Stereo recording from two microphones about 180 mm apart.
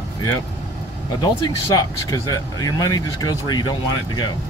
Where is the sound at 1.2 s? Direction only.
20° left (ahead or behind).